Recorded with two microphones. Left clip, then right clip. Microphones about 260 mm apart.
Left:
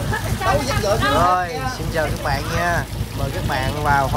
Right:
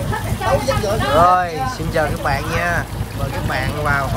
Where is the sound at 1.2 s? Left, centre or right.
Centre.